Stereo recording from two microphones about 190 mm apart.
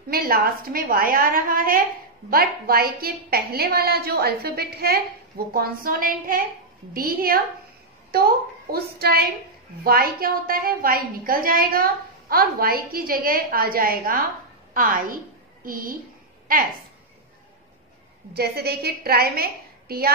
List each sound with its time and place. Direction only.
0.1 s a woman's voice: 50° right (ahead or behind)
18.3 s a woman's voice: 55° right (ahead or behind)